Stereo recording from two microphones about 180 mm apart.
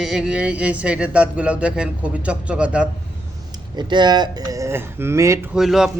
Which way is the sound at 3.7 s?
25° right (ahead or behind).